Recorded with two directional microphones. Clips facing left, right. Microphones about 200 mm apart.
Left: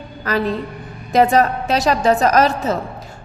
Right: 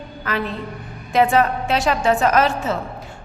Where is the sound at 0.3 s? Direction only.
40° left (ahead or behind).